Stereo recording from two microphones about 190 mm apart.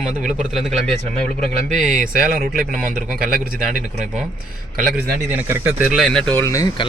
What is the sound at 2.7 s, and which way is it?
Speech, 45° right (ahead or behind).